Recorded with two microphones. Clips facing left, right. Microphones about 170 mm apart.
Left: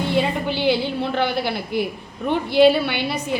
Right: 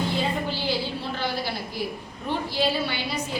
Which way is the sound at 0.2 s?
65° left (ahead or behind).